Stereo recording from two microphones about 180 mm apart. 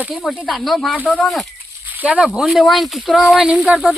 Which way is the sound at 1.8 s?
10° right (ahead or behind).